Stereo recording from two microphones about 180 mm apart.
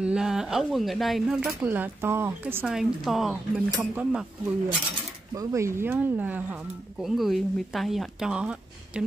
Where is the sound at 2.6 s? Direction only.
Centre (ahead or behind).